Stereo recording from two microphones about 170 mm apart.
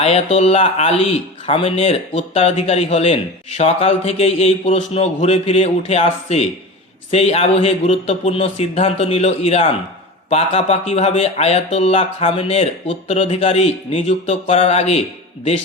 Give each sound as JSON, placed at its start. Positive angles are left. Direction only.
{"t": 0.0, "sound": "speech", "side_deg": 40}